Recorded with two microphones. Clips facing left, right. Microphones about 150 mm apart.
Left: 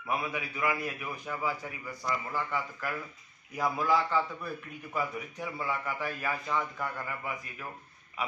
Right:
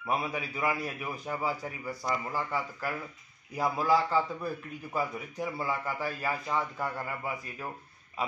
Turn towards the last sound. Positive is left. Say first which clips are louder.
# right 2 dB
turn(degrees=-30)  # may be behind; listen again after turning